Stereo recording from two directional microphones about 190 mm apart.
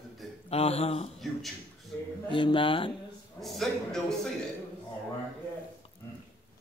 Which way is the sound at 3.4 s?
Centre (ahead or behind).